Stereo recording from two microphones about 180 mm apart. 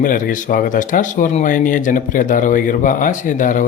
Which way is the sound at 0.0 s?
50° left (ahead or behind).